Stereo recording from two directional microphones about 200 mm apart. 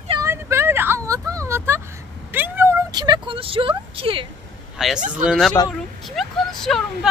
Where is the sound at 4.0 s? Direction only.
25° right (ahead or behind).